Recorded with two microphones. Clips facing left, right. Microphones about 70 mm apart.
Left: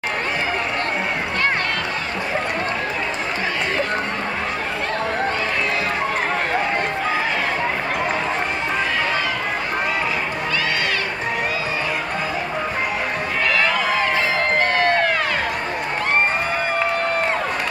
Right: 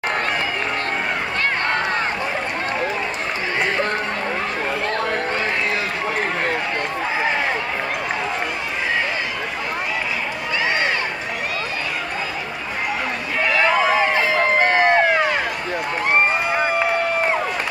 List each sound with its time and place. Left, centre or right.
13.6 s run: centre